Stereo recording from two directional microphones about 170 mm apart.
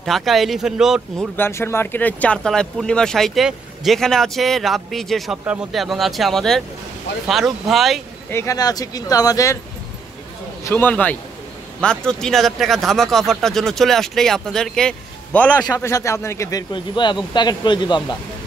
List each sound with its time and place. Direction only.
0.0 s speech: centre (ahead or behind)
1.3 s speech: 15° left (ahead or behind)
8.3 s speech: 15° left (ahead or behind)
10.6 s a man's voice: 10° left (ahead or behind); by 18.0 s 25° left (ahead or behind)